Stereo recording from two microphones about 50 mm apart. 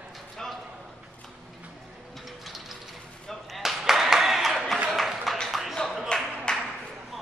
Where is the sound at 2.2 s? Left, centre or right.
Centre.